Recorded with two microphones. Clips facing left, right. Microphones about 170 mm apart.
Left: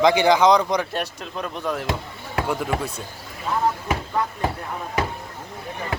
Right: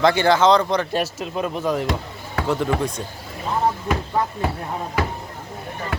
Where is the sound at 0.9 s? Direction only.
5° right (ahead or behind).